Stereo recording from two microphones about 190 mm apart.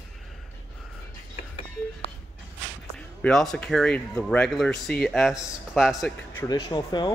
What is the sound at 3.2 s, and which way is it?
Speech, centre (ahead or behind).